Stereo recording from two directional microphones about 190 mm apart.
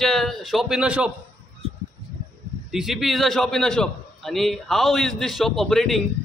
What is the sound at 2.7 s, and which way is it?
A man's voice, centre (ahead or behind).